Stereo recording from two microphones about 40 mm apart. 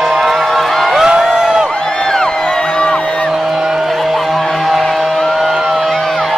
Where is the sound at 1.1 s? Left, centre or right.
Centre.